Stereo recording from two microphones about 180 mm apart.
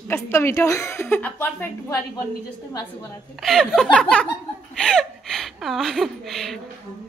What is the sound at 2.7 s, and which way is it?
Speech, 20° left (ahead or behind).